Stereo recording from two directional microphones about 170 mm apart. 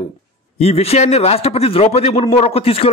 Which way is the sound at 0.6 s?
35° left (ahead or behind).